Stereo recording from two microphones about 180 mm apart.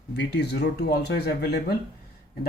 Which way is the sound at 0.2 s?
65° left (ahead or behind).